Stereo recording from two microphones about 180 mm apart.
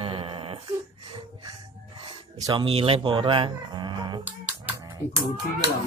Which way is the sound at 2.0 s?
25° right (ahead or behind).